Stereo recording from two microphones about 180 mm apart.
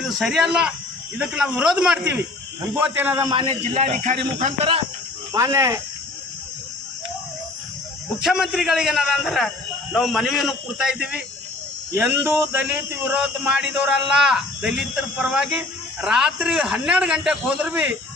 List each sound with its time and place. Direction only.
0.0 s a man's voice: centre (ahead or behind); by 3.5 s 25° right (ahead or behind)
3.8 s a man's voice: 40° right (ahead or behind)
5.3 s a man's voice: 15° right (ahead or behind)
8.2 s speech: centre (ahead or behind)